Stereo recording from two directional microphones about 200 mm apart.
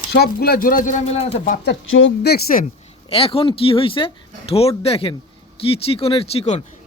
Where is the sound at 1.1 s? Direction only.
35° left (ahead or behind).